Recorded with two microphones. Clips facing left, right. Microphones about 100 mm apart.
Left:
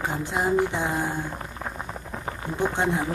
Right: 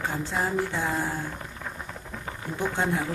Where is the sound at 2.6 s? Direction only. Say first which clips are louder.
Left 3 dB; 20° left (ahead or behind).